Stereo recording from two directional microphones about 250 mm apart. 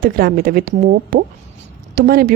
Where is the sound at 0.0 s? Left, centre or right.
Right.